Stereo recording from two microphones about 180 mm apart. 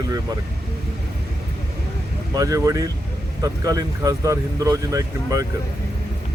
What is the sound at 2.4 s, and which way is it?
Speech, 20° right (ahead or behind).